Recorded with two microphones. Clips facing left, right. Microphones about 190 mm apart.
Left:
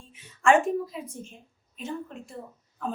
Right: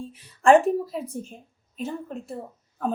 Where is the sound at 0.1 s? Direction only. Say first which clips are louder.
Right 5 dB; 35° right (ahead or behind).